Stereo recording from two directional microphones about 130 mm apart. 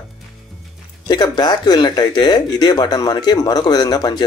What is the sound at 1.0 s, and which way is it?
A man's voice, 35° left (ahead or behind).